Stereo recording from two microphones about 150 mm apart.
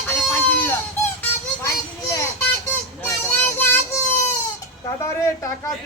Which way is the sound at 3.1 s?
15° left (ahead or behind).